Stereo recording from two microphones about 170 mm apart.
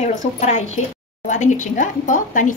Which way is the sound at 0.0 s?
40° left (ahead or behind).